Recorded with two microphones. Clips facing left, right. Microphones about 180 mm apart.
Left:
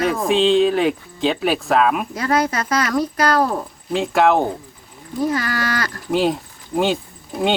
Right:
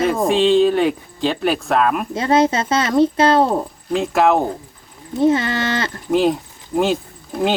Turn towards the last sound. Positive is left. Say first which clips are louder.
# right 1 dB
turn(degrees=0)  # may be behind; listen again after turning